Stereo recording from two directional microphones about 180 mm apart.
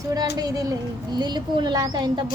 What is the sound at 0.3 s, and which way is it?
A woman's voice, 20° right (ahead or behind).